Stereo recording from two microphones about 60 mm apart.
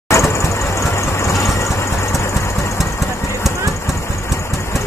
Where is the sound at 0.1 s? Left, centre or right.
Left.